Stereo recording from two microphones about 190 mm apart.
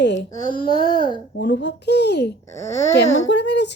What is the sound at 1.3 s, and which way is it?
Speech, 65° left (ahead or behind).